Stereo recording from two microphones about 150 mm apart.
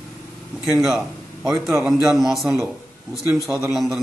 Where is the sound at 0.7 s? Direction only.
Centre (ahead or behind).